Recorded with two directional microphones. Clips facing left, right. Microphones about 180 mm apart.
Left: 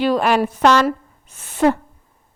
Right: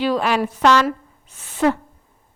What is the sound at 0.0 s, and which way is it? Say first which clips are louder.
A woman's voice: left 3 dB; 50° left (ahead or behind).